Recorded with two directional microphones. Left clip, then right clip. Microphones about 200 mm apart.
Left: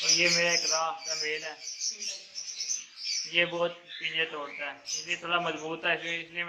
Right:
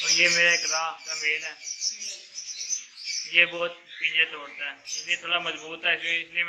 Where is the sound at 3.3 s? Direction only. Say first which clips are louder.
Right 6 dB; 15° left (ahead or behind).